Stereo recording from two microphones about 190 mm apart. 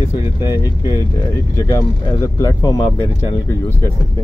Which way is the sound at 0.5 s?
20° left (ahead or behind).